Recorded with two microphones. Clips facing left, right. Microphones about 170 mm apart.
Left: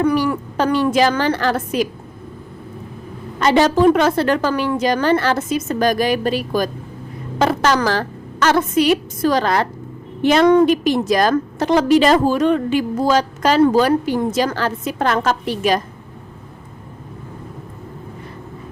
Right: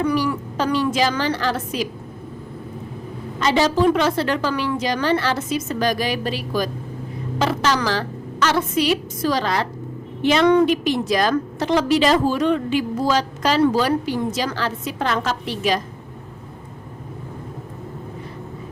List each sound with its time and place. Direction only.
0.0 s a woman's voice: 55° left (ahead or behind)
3.4 s a woman's voice: 55° left (ahead or behind)